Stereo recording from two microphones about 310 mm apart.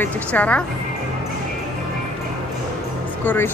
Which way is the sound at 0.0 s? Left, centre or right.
Centre.